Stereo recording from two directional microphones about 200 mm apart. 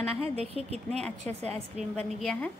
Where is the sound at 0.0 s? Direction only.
30° right (ahead or behind).